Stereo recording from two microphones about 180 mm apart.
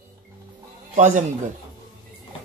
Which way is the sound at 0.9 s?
40° right (ahead or behind).